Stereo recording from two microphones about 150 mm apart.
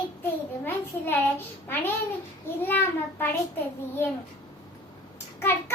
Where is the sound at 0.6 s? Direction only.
15° left (ahead or behind).